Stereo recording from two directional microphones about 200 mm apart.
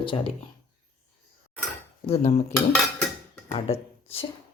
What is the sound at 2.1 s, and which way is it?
Speech, 30° left (ahead or behind).